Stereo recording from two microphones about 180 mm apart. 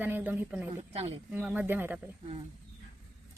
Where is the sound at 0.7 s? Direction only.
30° right (ahead or behind).